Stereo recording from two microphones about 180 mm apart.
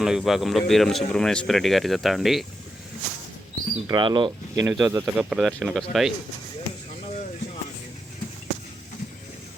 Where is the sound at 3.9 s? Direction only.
25° right (ahead or behind).